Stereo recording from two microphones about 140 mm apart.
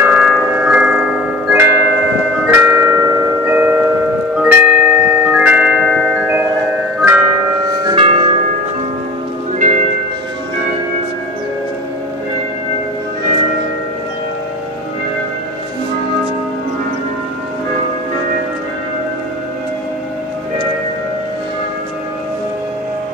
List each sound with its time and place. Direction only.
0.0 s tubular bells: 5° right (ahead or behind)
3.4 s music: 15° right (ahead or behind)
4.4 s glockenspiel: 5° right (ahead or behind)
7.0 s music: 15° right (ahead or behind)
7.7 s bell: 30° right (ahead or behind)
8.0 s church bell: 40° right (ahead or behind)
9.6 s church bell: 65° right (ahead or behind)